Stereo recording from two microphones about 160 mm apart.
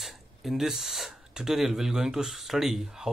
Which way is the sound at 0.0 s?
Centre (ahead or behind).